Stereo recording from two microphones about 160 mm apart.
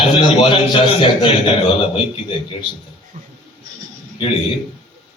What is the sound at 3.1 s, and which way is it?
Speech, 45° right (ahead or behind).